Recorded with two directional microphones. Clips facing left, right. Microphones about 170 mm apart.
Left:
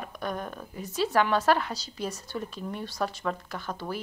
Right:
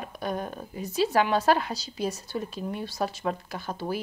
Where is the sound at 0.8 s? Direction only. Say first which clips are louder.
Right 2 dB; 10° right (ahead or behind).